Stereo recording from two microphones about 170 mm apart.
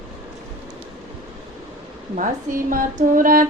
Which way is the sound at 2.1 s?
50° right (ahead or behind).